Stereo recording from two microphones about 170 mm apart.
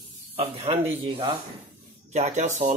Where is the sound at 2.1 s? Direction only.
40° right (ahead or behind).